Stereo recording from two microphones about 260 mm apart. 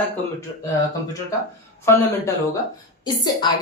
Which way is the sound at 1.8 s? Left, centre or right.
Centre.